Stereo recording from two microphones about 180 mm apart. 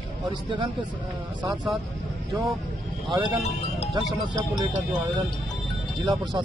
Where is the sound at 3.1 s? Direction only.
25° right (ahead or behind).